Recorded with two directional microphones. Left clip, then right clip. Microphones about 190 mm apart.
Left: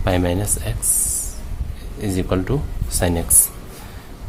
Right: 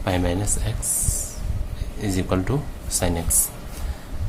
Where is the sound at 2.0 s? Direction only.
15° left (ahead or behind).